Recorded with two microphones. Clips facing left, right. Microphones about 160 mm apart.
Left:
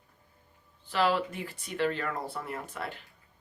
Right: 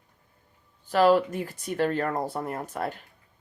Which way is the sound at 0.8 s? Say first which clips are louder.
Right 7 dB; 45° right (ahead or behind).